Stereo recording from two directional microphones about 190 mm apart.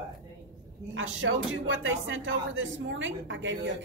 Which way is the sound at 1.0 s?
90° right.